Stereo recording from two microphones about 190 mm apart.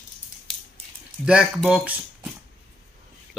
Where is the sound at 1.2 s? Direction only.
Centre (ahead or behind).